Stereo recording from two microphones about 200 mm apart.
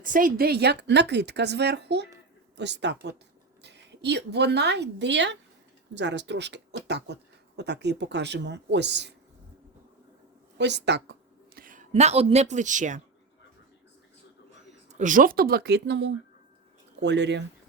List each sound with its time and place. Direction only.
0.0 s a woman's voice: 45° right (ahead or behind); by 9.1 s 60° right (ahead or behind)
10.6 s a woman's voice: 60° right (ahead or behind); by 13.0 s 40° right (ahead or behind)
14.9 s speech: 40° right (ahead or behind); by 17.4 s 60° right (ahead or behind)